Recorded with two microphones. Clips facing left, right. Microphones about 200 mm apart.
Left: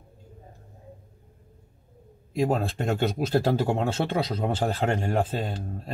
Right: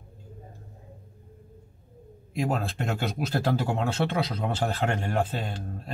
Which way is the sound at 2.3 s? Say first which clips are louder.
Left 3 dB; 25° left (ahead or behind).